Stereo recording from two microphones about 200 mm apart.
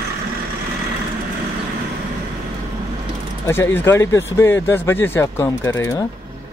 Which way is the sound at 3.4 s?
10° left (ahead or behind).